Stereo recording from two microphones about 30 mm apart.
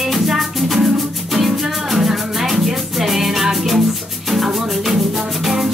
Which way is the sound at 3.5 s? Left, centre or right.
Centre.